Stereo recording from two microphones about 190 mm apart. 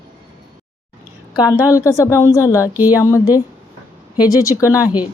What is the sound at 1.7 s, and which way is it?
Speech, 15° left (ahead or behind).